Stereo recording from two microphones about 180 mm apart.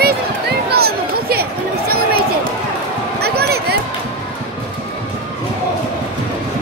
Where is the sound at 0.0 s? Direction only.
60° right (ahead or behind).